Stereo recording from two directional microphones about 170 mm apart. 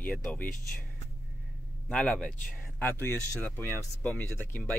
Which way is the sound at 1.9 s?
5° left (ahead or behind).